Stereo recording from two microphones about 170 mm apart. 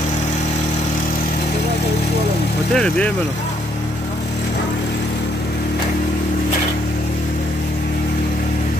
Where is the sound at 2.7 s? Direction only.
5° left (ahead or behind).